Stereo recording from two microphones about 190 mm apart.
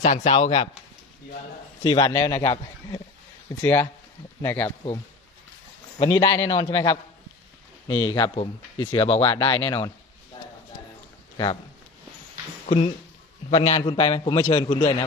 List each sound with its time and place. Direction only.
0.0 s a man's voice: 35° left (ahead or behind)
1.8 s speech: 25° left (ahead or behind)
4.6 s speech: 25° left (ahead or behind)
6.0 s speech: 20° left (ahead or behind)
12.6 s a man's voice: 30° left (ahead or behind)
14.8 s a man's voice: 35° left (ahead or behind)